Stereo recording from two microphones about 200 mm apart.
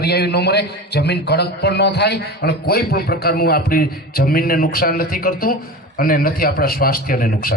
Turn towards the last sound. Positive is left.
turn(degrees=45)  # may be behind; listen again after turning